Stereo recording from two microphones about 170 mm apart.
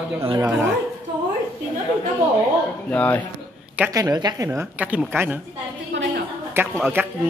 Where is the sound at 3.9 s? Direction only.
20° right (ahead or behind).